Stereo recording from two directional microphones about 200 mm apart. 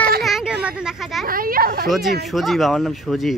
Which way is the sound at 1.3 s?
45° right (ahead or behind).